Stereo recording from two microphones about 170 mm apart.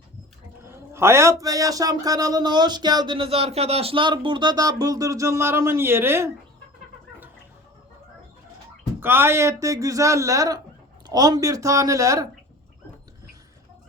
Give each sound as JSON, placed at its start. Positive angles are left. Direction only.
{"t": 0.6, "sound": "a man's voice", "side_deg": -15}
{"t": 9.0, "sound": "a man's voice", "side_deg": -15}